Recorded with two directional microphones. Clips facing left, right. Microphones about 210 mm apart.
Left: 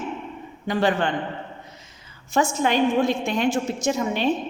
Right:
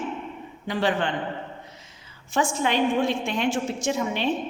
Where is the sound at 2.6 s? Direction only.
45° left (ahead or behind).